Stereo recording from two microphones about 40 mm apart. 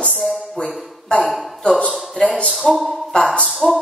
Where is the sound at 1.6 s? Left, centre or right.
Centre.